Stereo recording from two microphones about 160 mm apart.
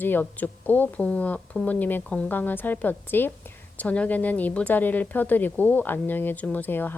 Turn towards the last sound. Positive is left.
turn(degrees=10)  # may be behind; listen again after turning